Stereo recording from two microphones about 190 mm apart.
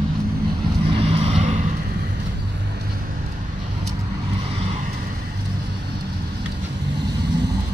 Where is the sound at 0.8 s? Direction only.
30° right (ahead or behind).